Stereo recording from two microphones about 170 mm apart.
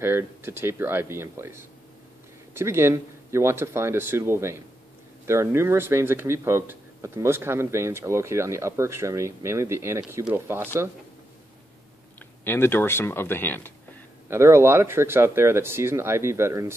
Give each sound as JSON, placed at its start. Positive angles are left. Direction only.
{"t": 0.0, "sound": "speech", "side_deg": -15}
{"t": 12.2, "sound": "speech", "side_deg": 10}
{"t": 14.3, "sound": "speech", "side_deg": -15}